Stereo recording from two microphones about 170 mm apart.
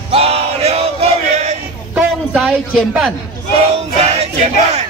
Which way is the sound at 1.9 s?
5° right (ahead or behind).